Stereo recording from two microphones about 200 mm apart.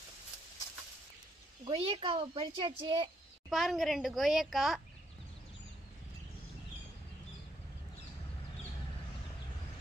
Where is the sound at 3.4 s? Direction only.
Centre (ahead or behind).